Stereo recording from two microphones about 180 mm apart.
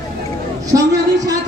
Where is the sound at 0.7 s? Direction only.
20° right (ahead or behind).